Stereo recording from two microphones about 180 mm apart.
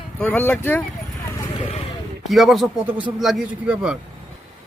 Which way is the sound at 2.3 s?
Centre (ahead or behind).